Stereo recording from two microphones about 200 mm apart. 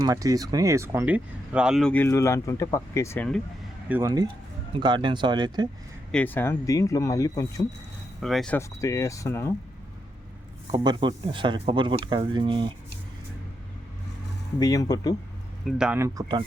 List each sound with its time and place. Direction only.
0.0 s speech: 15° right (ahead or behind); by 3.2 s 15° left (ahead or behind)
3.8 s speech: 15° right (ahead or behind)
6.1 s speech: 5° left (ahead or behind)
8.2 s speech: centre (ahead or behind)
10.7 s speech: 20° right (ahead or behind)
14.6 s speech: 20° left (ahead or behind)
15.6 s speech: 5° right (ahead or behind)